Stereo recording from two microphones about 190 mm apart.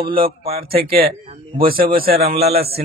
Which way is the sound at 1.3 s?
25° right (ahead or behind).